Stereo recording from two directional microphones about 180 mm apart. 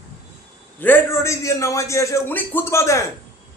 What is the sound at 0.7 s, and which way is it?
A man's voice, 10° left (ahead or behind).